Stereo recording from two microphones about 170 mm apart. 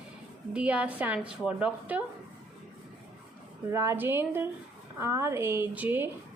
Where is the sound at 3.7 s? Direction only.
15° right (ahead or behind).